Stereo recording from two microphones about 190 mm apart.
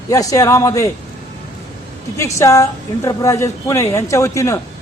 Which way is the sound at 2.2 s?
15° left (ahead or behind).